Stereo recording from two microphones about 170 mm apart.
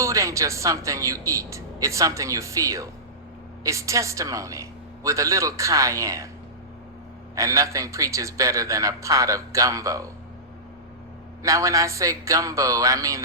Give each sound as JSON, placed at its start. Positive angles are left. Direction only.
{"t": 0.0, "sound": "a woman's voice", "side_deg": -20}
{"t": 7.3, "sound": "a man's voice", "side_deg": -20}
{"t": 11.4, "sound": "a man's voice", "side_deg": -20}